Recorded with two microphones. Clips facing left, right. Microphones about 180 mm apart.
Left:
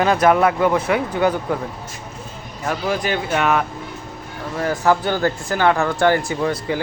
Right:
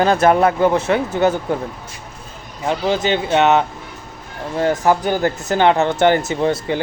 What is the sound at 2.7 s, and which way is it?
Speech, 25° right (ahead or behind).